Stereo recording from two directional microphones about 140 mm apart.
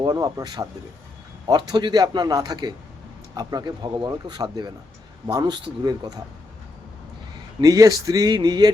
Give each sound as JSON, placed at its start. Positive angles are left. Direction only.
{"t": 0.0, "sound": "speech", "side_deg": -25}
{"t": 7.6, "sound": "speech", "side_deg": -25}